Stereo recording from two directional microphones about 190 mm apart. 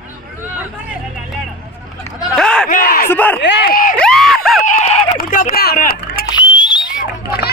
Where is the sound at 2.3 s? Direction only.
5° left (ahead or behind).